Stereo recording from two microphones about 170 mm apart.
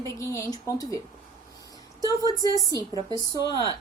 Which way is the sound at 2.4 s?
20° left (ahead or behind).